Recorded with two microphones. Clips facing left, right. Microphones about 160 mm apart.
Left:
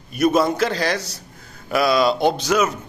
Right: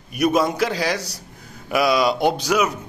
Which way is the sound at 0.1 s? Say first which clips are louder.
Left 1 dB; 15° right (ahead or behind).